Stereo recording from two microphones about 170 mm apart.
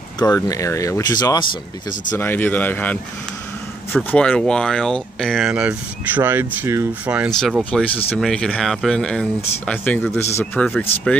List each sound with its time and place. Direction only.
0.4 s speech: 20° left (ahead or behind)
2.1 s speech: 10° left (ahead or behind); by 7.3 s 10° right (ahead or behind)
7.3 s speech: centre (ahead or behind)